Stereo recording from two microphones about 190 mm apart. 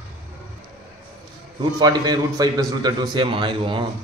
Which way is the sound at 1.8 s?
20° right (ahead or behind).